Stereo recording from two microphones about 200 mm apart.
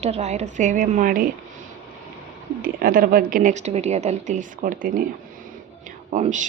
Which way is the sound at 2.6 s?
45° right (ahead or behind).